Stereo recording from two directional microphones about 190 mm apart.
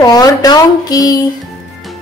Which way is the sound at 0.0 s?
20° left (ahead or behind).